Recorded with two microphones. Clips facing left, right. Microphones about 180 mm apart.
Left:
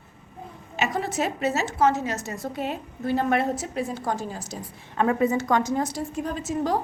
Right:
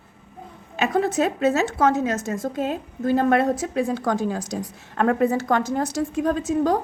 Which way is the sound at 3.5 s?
90° right.